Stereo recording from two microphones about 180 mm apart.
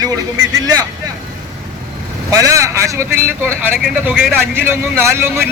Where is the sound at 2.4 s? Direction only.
15° right (ahead or behind).